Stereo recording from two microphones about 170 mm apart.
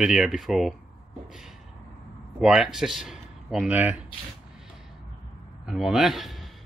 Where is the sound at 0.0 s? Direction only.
5° right (ahead or behind).